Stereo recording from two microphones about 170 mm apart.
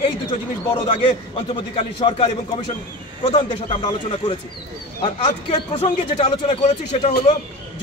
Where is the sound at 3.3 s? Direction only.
25° left (ahead or behind).